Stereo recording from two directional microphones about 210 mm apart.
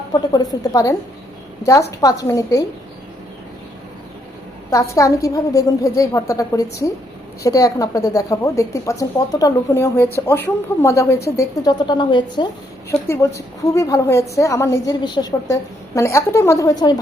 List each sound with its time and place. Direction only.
0.1 s a woman's voice: 20° left (ahead or behind)
4.7 s a woman's voice: 15° left (ahead or behind)